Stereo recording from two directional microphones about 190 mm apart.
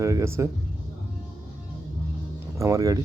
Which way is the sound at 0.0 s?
15° right (ahead or behind).